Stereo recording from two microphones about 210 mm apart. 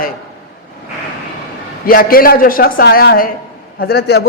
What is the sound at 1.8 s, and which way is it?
A man's voice, 45° left (ahead or behind).